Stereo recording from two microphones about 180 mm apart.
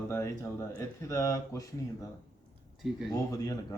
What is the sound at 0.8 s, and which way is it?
Speech, 15° left (ahead or behind).